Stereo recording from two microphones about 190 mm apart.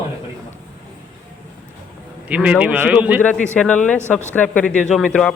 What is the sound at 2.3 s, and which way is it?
Speech, 5° right (ahead or behind).